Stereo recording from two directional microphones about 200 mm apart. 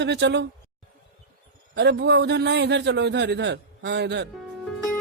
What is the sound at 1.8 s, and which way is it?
A man's voice, 55° right (ahead or behind).